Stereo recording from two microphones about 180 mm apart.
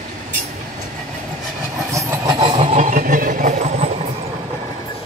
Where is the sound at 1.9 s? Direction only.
15° right (ahead or behind); by 3.9 s 40° right (ahead or behind).